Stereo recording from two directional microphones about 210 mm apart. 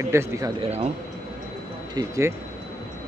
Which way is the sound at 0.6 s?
30° right (ahead or behind).